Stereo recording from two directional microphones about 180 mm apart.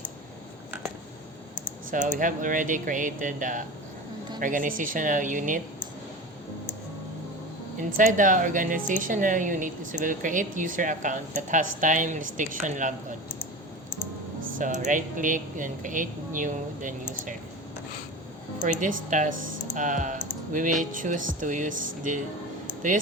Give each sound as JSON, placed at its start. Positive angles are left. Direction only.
{"t": 1.9, "sound": "a woman's voice", "side_deg": -45}
{"t": 7.9, "sound": "a woman's voice", "side_deg": -45}
{"t": 14.6, "sound": "a woman's voice", "side_deg": -45}
{"t": 18.6, "sound": "a woman's voice", "side_deg": -45}